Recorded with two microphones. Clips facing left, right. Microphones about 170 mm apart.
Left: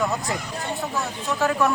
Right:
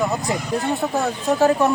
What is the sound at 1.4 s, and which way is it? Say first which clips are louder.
Speech: right 4 dB; 25° right (ahead or behind).